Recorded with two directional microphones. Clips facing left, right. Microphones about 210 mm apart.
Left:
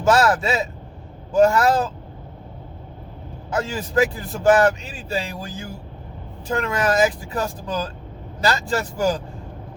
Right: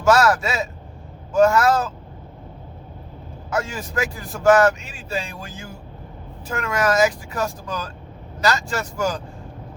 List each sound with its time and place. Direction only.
0.1 s speech: 30° left (ahead or behind)
3.5 s speech: 35° left (ahead or behind)